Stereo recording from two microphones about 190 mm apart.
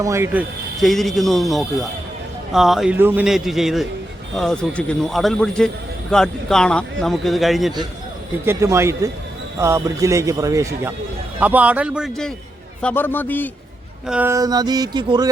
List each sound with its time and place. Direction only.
0.0 s a man's voice: 15° right (ahead or behind)
0.8 s speech: centre (ahead or behind)
8.4 s a man's voice: 15° right (ahead or behind)
12.8 s a man's voice: 10° left (ahead or behind)
14.1 s a sound: 10° right (ahead or behind)